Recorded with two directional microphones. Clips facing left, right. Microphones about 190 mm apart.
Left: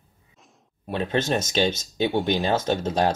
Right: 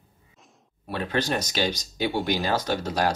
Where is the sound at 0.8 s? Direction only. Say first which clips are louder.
Left 3 dB; 20° left (ahead or behind).